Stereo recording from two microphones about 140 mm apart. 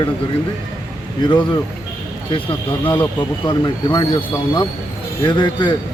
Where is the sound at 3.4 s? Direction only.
35° left (ahead or behind).